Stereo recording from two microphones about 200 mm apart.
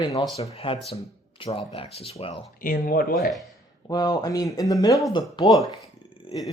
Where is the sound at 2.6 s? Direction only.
45° left (ahead or behind).